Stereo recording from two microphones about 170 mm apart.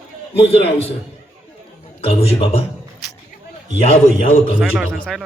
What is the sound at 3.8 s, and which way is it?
Speech, 35° left (ahead or behind).